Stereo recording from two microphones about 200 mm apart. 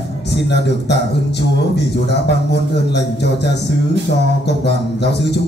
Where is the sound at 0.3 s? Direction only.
60° left (ahead or behind).